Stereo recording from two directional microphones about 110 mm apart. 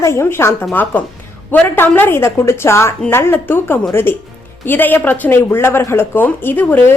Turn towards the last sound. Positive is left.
turn(degrees=20)  # may be behind; listen again after turning